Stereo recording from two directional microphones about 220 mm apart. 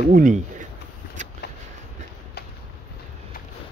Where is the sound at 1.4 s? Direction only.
50° left (ahead or behind).